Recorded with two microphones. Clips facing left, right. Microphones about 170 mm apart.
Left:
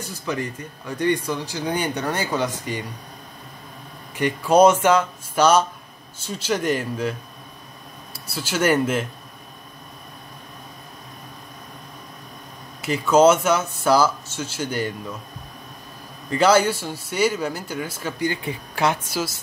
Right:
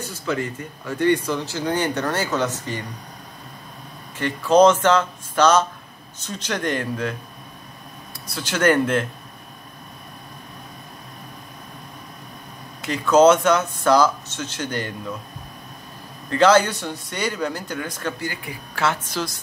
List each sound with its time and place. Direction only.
0.0 s speech: 15° left (ahead or behind)
4.2 s speech: 10° left (ahead or behind)
8.3 s speech: 5° left (ahead or behind)
12.8 s speech: 10° left (ahead or behind)
16.3 s speech: 10° left (ahead or behind)
18.2 s speech: 25° left (ahead or behind); by 19.3 s 10° left (ahead or behind)